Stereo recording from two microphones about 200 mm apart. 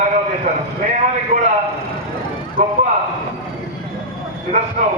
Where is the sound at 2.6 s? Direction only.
35° right (ahead or behind).